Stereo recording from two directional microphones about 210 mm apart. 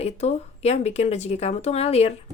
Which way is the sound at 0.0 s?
30° left (ahead or behind).